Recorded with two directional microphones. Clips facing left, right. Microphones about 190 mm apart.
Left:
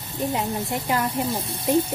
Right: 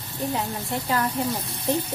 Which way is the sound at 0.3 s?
20° left (ahead or behind).